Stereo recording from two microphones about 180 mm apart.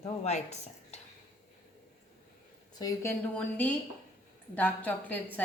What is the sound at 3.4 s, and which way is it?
A woman's voice, 10° left (ahead or behind).